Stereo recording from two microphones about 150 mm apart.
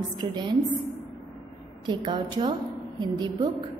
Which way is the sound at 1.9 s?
30° right (ahead or behind).